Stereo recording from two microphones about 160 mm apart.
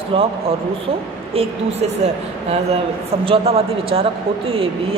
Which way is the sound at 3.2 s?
40° right (ahead or behind).